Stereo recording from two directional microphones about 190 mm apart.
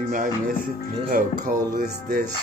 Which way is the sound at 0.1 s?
45° right (ahead or behind).